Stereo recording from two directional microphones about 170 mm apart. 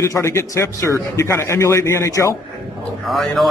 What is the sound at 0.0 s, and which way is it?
A man's voice, 15° left (ahead or behind).